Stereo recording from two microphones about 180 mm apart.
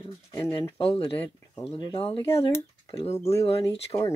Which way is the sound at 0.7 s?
30° left (ahead or behind).